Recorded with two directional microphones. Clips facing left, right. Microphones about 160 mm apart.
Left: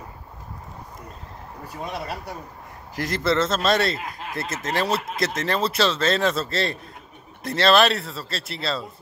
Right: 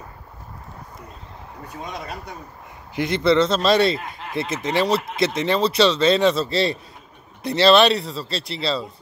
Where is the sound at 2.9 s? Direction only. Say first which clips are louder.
Right 5 dB; centre (ahead or behind).